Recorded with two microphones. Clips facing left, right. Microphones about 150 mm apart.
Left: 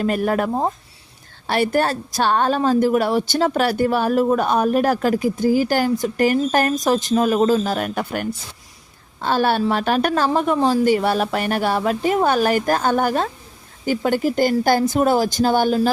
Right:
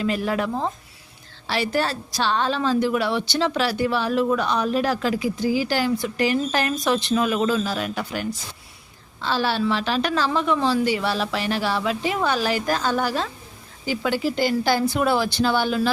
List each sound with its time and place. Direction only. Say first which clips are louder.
0.0 s a woman's voice: left 4 dB; 50° left (ahead or behind)